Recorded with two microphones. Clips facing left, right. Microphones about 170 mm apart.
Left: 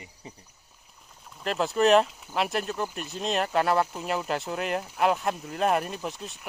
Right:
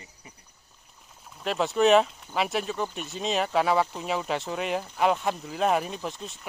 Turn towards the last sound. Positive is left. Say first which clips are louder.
# even
turn(degrees=0)  # may be behind; listen again after turning